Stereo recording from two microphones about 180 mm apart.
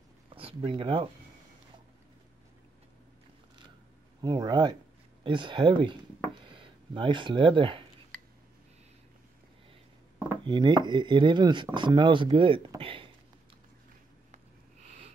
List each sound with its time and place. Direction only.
0.3 s a sound: 30° right (ahead or behind)
0.6 s speech: 30° right (ahead or behind)
4.2 s speech: 25° right (ahead or behind)
10.1 s chopping: 10° right (ahead or behind)
10.4 s speech: 25° right (ahead or behind)
14.9 s sniff: 35° right (ahead or behind)